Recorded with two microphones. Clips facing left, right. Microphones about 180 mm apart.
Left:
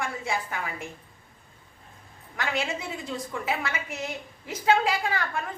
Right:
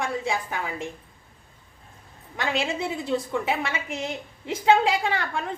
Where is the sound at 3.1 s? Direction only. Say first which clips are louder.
Right 5 dB; 25° right (ahead or behind).